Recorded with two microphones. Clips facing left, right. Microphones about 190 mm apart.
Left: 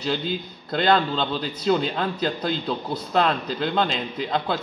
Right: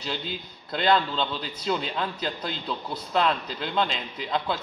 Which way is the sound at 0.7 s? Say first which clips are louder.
Left 3 dB; 45° left (ahead or behind).